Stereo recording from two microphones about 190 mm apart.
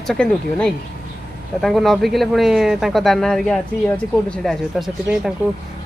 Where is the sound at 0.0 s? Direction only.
Centre (ahead or behind).